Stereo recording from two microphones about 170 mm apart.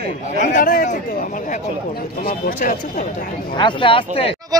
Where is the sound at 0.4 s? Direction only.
50° left (ahead or behind).